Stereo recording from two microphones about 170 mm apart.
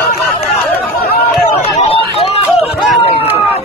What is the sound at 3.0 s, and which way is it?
Speech, 35° left (ahead or behind).